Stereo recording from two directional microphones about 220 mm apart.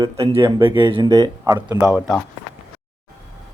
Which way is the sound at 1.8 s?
Centre (ahead or behind).